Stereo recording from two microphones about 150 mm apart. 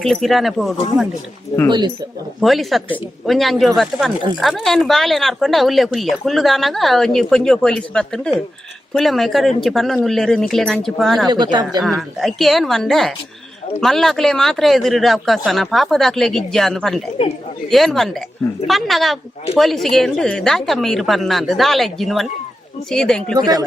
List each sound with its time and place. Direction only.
0.0 s speech: centre (ahead or behind)
1.5 s speech: 40° left (ahead or behind)
2.4 s speech: centre (ahead or behind)